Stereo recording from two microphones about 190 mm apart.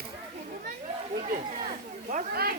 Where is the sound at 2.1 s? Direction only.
50° right (ahead or behind).